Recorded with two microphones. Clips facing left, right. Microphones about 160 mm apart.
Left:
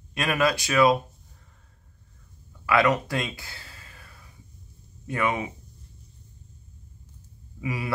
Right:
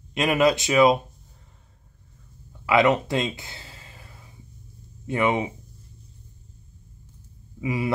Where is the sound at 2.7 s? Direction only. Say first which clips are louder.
Right 3 dB; 20° right (ahead or behind).